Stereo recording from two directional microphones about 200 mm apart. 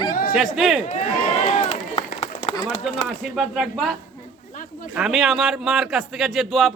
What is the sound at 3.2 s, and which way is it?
Speech, centre (ahead or behind).